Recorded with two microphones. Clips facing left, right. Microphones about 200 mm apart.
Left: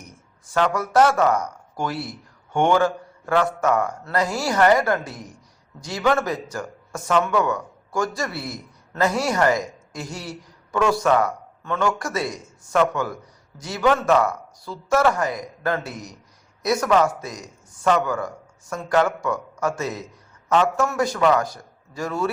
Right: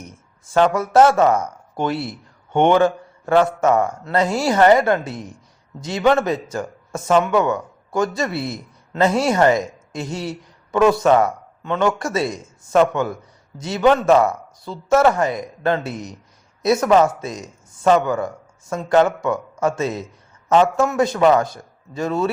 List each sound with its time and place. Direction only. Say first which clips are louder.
0.5 s a man's voice: right 5 dB; 25° right (ahead or behind)